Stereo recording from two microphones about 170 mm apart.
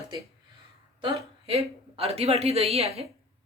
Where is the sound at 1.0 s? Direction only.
30° right (ahead or behind).